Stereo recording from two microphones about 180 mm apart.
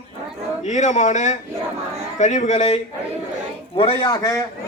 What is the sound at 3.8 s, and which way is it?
Speech, 30° left (ahead or behind).